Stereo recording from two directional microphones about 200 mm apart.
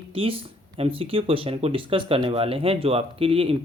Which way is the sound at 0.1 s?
25° right (ahead or behind).